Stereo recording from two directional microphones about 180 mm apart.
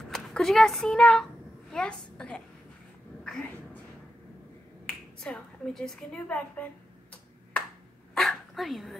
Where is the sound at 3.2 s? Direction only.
5° left (ahead or behind).